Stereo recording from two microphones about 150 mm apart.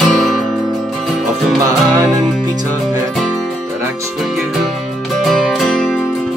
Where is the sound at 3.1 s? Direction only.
Centre (ahead or behind).